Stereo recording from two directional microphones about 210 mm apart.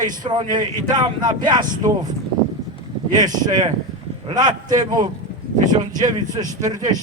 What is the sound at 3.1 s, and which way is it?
A man's voice, 20° right (ahead or behind).